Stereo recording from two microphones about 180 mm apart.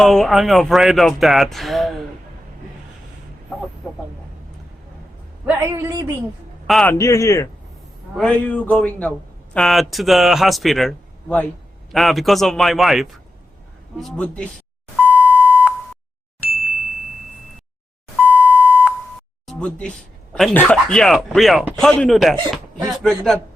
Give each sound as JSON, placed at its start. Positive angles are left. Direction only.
{"t": 0.0, "sound": "a man's voice", "side_deg": 0}
{"t": 5.5, "sound": "a man's voice", "side_deg": -10}
{"t": 6.7, "sound": "a man's voice", "side_deg": 5}
{"t": 7.0, "sound": "speech", "side_deg": 15}
{"t": 8.1, "sound": "a man's voice", "side_deg": 5}
{"t": 15.2, "sound": "beep", "side_deg": -10}
{"t": 18.2, "sound": "beep", "side_deg": -10}
{"t": 19.5, "sound": "a man's voice", "side_deg": 5}